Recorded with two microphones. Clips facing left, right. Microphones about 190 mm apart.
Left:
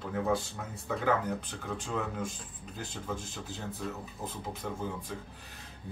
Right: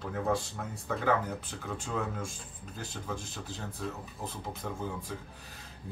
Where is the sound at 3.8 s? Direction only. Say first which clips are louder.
Right 1 dB; centre (ahead or behind).